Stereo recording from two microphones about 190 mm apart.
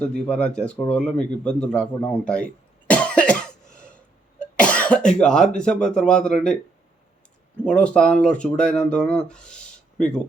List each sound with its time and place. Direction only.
0.0 s speech: 5° left (ahead or behind)